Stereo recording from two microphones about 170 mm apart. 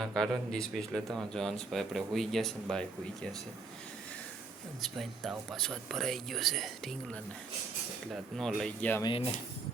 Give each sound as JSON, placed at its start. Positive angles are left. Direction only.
{"t": 0.1, "sound": "speech", "side_deg": 5}
{"t": 4.8, "sound": "speech", "side_deg": 0}
{"t": 9.0, "sound": "speech", "side_deg": 35}